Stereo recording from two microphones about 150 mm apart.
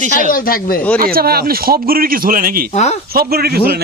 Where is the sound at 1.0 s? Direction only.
85° right; by 2.6 s 70° right (ahead or behind).